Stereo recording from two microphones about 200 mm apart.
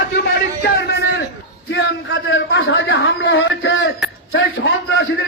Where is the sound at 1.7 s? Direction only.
65° left (ahead or behind).